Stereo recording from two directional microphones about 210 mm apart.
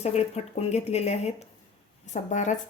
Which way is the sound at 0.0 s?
30° left (ahead or behind).